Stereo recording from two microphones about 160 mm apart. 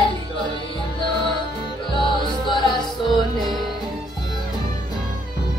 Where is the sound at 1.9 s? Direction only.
30° left (ahead or behind).